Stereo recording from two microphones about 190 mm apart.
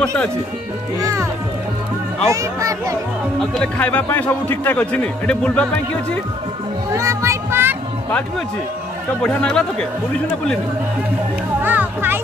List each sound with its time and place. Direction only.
0.0 s speech: 5° left (ahead or behind)
2.2 s speech: 15° right (ahead or behind)
3.3 s a man's voice: 5° left (ahead or behind)
6.9 s a sound: 15° right (ahead or behind)
9.2 s speech: 5° left (ahead or behind)
11.6 s speech: 10° right (ahead or behind)